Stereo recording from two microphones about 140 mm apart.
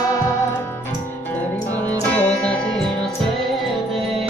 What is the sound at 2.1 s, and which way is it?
Music, 5° left (ahead or behind).